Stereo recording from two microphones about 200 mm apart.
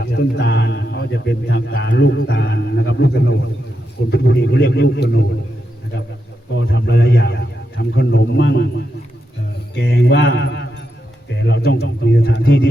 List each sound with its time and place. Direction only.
0.1 s a man's voice: 60° left (ahead or behind)
6.6 s a man's voice: 65° left (ahead or behind)